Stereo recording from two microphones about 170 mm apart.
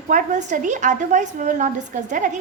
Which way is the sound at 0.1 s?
45° right (ahead or behind).